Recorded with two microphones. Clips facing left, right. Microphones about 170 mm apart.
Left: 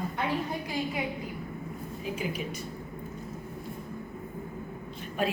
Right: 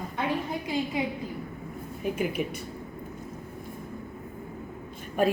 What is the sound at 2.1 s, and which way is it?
Speech, 60° right (ahead or behind).